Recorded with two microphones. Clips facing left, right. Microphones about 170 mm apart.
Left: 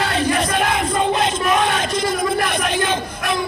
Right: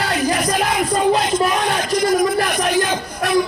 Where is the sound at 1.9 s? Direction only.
25° left (ahead or behind).